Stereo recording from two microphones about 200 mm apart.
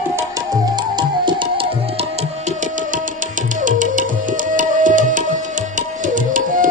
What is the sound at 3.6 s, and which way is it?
Tabla, 40° right (ahead or behind).